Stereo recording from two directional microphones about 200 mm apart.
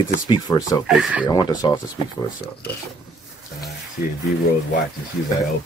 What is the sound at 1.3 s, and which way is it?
Speech, 20° left (ahead or behind).